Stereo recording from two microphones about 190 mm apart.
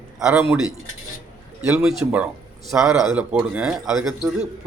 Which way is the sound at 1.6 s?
5° right (ahead or behind).